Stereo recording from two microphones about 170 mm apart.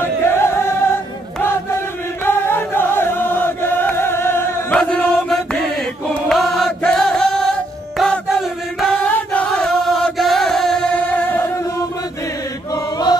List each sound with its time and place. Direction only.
0.2 s music: 15° left (ahead or behind)
2.2 s chant: 15° left (ahead or behind)
6.2 s choir: centre (ahead or behind)
8.0 s a sound: centre (ahead or behind)
12.7 s chant: 25° left (ahead or behind)